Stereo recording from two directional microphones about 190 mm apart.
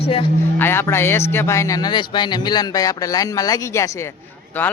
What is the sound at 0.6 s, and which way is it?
Speech, 10° left (ahead or behind).